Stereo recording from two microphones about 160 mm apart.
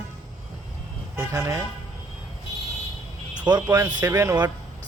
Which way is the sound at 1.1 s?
15° right (ahead or behind).